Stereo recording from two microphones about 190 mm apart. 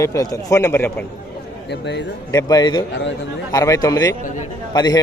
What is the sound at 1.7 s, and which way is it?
Speech, 65° left (ahead or behind).